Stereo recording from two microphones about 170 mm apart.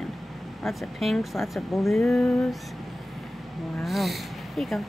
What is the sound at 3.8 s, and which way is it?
Speech, centre (ahead or behind).